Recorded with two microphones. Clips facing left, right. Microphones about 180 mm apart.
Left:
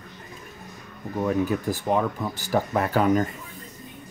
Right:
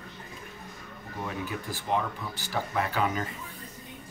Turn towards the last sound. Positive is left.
turn(degrees=45)  # may be behind; listen again after turning